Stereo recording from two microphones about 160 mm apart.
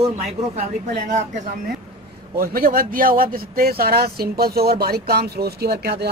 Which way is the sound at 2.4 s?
70° right (ahead or behind).